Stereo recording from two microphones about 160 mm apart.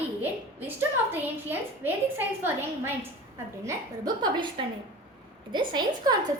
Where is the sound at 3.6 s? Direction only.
25° right (ahead or behind).